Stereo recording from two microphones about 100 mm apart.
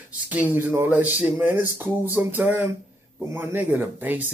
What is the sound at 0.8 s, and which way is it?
Speech, 15° right (ahead or behind).